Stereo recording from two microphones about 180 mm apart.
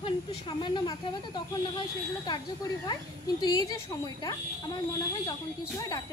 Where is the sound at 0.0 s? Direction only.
25° left (ahead or behind).